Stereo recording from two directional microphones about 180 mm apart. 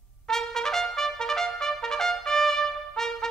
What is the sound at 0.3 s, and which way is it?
Trumpet, 5° left (ahead or behind).